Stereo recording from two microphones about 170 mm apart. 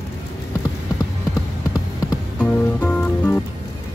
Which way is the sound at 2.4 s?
10° left (ahead or behind).